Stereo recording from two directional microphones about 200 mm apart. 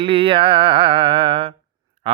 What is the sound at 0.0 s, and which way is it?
Music, 25° right (ahead or behind).